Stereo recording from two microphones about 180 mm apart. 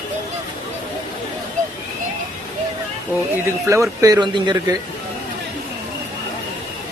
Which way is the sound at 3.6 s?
15° right (ahead or behind).